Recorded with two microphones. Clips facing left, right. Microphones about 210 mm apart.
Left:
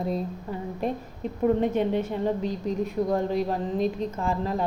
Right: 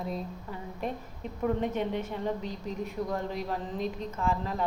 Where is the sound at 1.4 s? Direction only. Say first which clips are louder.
Left 6 dB; 30° left (ahead or behind).